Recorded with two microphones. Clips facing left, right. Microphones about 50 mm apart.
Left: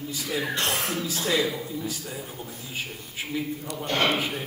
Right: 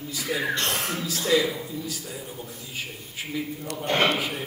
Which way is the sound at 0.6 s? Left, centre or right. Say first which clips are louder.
Even; centre.